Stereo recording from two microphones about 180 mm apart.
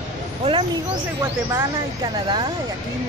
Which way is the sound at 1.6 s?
20° right (ahead or behind).